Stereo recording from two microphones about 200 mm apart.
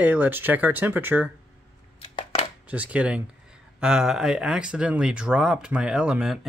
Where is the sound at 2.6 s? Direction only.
5° right (ahead or behind).